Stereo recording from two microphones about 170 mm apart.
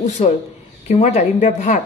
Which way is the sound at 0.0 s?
45° left (ahead or behind).